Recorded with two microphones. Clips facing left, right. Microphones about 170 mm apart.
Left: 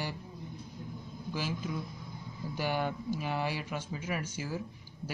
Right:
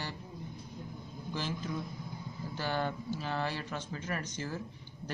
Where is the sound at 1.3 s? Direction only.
10° left (ahead or behind).